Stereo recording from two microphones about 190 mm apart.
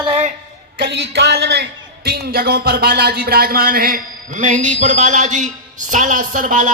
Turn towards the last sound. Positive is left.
turn(degrees=-40)  # may be behind; listen again after turning